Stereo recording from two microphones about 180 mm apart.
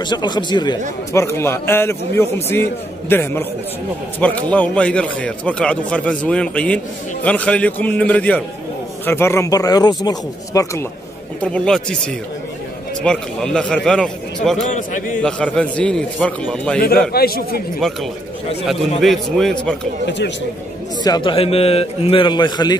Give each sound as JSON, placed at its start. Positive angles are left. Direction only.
{"t": 0.0, "sound": "speech", "side_deg": 25}
{"t": 11.4, "sound": "a man's voice", "side_deg": 5}
{"t": 13.0, "sound": "a man's voice", "side_deg": 5}
{"t": 14.9, "sound": "a man's voice", "side_deg": 45}
{"t": 15.2, "sound": "a man's voice", "side_deg": 5}
{"t": 17.1, "sound": "a man's voice", "side_deg": 60}
{"t": 18.7, "sound": "a man's voice", "side_deg": 0}
{"t": 21.0, "sound": "a man's voice", "side_deg": 25}